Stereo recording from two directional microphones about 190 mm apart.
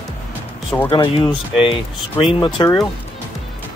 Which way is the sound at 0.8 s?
25° left (ahead or behind).